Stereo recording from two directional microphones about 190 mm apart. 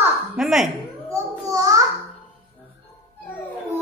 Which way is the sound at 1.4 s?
20° right (ahead or behind).